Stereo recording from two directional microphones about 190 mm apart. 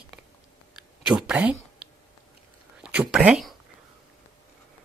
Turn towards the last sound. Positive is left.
turn(degrees=-5)  # may be behind; listen again after turning